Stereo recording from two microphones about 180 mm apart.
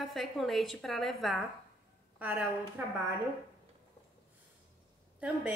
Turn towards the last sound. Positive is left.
turn(degrees=-5)  # may be behind; listen again after turning